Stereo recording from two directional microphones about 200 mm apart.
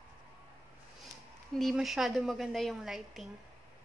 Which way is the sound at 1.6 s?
Centre (ahead or behind).